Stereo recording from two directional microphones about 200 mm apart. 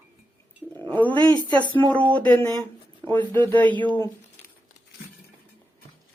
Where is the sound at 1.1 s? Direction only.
25° right (ahead or behind).